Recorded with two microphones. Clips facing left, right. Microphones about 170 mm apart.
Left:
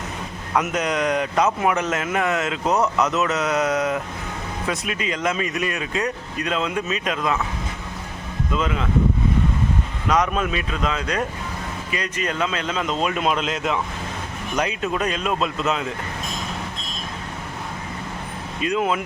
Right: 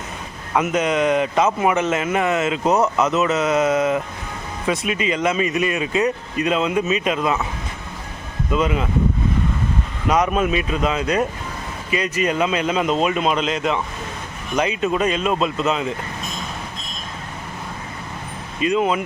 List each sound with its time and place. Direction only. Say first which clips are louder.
0.5 s a man's voice: right 3 dB; centre (ahead or behind)
8.5 s speech: right 4 dB; 10° right (ahead or behind)
10.1 s a man's voice: right 3 dB; 10° right (ahead or behind)
18.6 s a man's voice: right 3 dB; centre (ahead or behind)